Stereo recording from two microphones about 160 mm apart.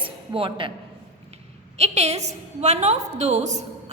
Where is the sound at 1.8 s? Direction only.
40° right (ahead or behind).